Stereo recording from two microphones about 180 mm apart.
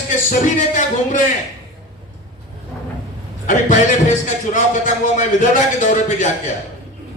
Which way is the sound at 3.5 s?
45° left (ahead or behind).